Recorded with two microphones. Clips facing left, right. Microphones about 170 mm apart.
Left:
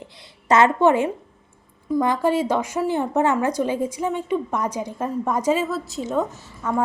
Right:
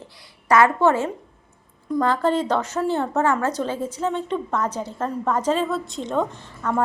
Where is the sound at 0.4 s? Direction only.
20° left (ahead or behind).